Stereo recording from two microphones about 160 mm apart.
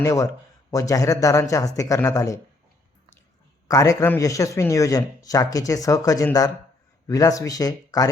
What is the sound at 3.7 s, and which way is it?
Speech, 20° left (ahead or behind).